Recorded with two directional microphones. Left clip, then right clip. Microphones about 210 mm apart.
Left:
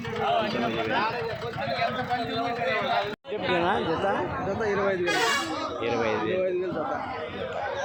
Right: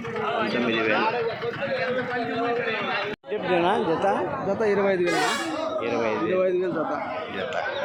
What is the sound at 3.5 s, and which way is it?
Speech, 10° right (ahead or behind).